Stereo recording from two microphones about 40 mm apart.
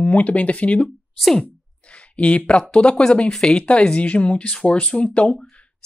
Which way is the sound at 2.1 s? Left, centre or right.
Left.